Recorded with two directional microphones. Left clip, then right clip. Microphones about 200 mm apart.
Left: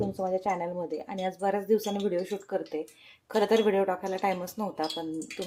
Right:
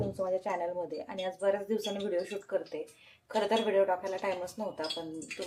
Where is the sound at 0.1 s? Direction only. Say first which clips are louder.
Left 3 dB; 25° left (ahead or behind).